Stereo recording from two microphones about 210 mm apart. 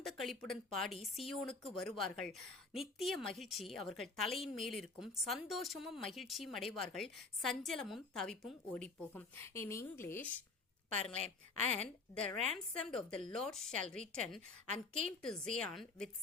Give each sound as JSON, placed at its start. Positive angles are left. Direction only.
{"t": 0.0, "sound": "a woman's voice", "side_deg": 0}
{"t": 1.2, "sound": "speech", "side_deg": 25}
{"t": 1.8, "sound": "a woman's voice", "side_deg": 0}
{"t": 11.7, "sound": "a woman's voice", "side_deg": 5}
{"t": 14.7, "sound": "a woman's voice", "side_deg": -35}
{"t": 15.2, "sound": "a woman's voice", "side_deg": 5}